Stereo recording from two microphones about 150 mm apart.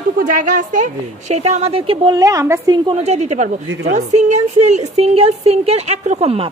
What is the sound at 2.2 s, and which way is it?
Speech, 20° right (ahead or behind).